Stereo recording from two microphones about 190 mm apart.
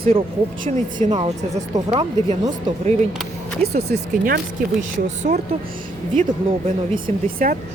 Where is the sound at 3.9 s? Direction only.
40° right (ahead or behind).